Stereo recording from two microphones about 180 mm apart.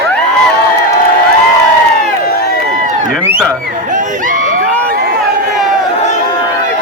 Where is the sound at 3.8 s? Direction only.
45° right (ahead or behind).